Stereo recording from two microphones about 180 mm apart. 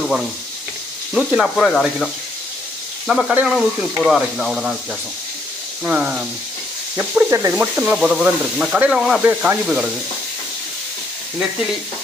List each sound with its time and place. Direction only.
1.1 s speech: 5° right (ahead or behind)
3.1 s speech: 5° right (ahead or behind)
5.9 s speech: 5° right (ahead or behind)